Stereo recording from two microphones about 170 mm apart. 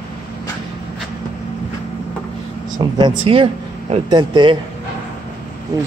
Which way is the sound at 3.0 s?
30° right (ahead or behind).